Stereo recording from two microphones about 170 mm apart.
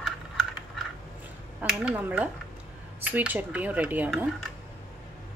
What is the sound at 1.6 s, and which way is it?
Speech, 10° right (ahead or behind).